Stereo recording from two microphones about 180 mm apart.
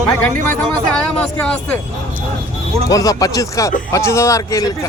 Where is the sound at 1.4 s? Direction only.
5° left (ahead or behind).